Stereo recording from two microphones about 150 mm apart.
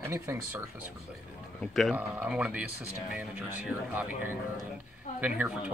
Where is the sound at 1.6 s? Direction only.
Centre (ahead or behind).